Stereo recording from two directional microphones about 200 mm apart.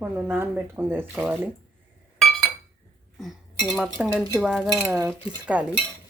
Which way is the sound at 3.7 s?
5° right (ahead or behind).